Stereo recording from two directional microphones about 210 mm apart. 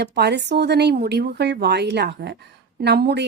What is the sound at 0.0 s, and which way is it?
Speech, 50° right (ahead or behind).